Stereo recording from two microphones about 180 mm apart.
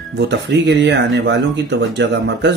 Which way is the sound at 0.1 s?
70° right (ahead or behind).